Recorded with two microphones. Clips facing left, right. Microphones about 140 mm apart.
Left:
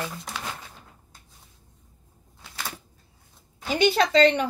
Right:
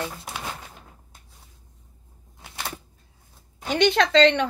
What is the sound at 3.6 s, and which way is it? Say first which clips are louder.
Speech: right 1 dB; 5° left (ahead or behind).